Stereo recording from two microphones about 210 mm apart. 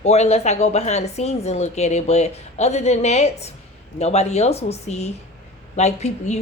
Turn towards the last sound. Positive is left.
turn(degrees=30)  # may be behind; listen again after turning